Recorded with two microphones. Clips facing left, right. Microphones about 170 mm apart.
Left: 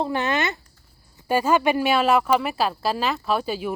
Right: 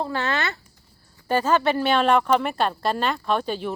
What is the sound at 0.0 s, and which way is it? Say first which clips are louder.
Speech: left 2 dB; 15° left (ahead or behind).